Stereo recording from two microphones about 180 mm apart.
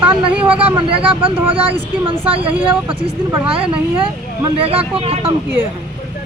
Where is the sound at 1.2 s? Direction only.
30° right (ahead or behind).